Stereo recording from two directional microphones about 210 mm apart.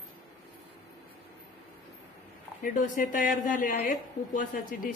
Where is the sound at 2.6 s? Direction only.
40° left (ahead or behind).